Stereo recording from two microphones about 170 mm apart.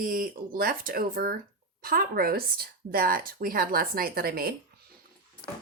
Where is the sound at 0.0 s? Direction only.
55° right (ahead or behind).